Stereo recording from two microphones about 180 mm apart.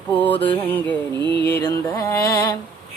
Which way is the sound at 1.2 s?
25° right (ahead or behind).